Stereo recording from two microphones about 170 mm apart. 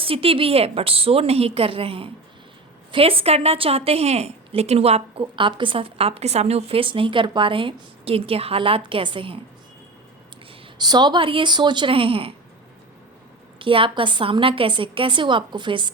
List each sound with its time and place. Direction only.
0.0 s a woman's voice: 35° right (ahead or behind)
10.8 s a woman's voice: 25° right (ahead or behind)
13.6 s a woman's voice: 30° right (ahead or behind)